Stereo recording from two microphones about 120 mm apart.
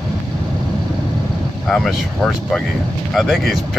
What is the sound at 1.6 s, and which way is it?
Speech, 5° left (ahead or behind).